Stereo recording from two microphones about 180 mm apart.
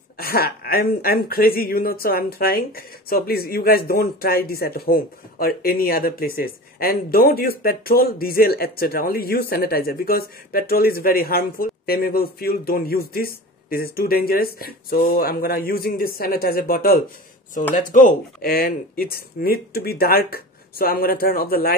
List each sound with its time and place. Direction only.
0.2 s speech: 55° left (ahead or behind)